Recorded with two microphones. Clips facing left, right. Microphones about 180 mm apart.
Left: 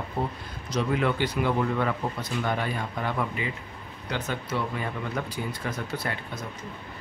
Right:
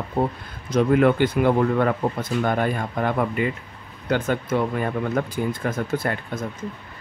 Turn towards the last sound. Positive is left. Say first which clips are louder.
# right 7 dB
turn(degrees=-50)  # may be behind; listen again after turning